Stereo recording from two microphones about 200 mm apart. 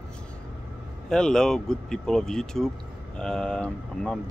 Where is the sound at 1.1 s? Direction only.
5° left (ahead or behind).